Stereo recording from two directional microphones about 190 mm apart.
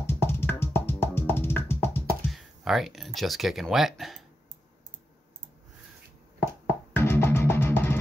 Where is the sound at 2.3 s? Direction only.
Centre (ahead or behind).